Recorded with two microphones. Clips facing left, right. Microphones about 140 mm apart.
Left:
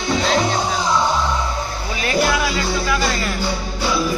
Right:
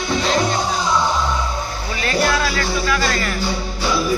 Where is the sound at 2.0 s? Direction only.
20° left (ahead or behind).